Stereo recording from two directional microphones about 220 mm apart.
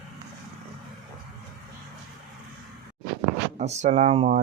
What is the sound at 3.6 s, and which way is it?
Speech, 30° right (ahead or behind).